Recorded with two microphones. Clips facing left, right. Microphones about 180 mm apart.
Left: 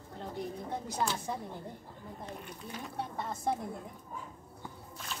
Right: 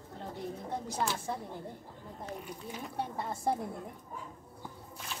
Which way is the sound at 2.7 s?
10° right (ahead or behind).